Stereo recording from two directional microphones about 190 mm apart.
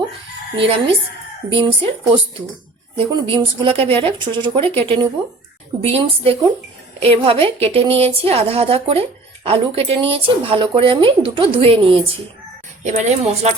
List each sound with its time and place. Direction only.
0.5 s a woman's voice: 30° right (ahead or behind)